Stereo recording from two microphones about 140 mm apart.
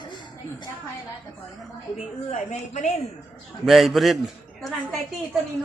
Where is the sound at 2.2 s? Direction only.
60° left (ahead or behind).